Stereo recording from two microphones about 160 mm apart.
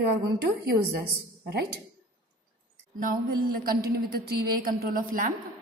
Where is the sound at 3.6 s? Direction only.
70° right (ahead or behind).